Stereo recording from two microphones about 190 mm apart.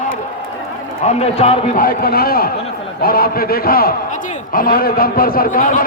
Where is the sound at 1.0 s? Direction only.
35° left (ahead or behind).